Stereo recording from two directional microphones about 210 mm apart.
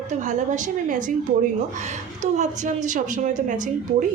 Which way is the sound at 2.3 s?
35° right (ahead or behind).